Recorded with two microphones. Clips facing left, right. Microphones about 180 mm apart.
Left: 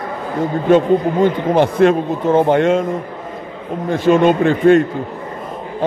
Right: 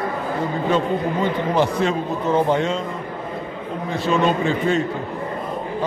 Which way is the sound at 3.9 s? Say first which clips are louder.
Left 7 dB; 50° left (ahead or behind).